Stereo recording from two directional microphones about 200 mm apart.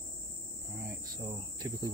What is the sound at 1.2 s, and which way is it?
Cricket, 25° right (ahead or behind).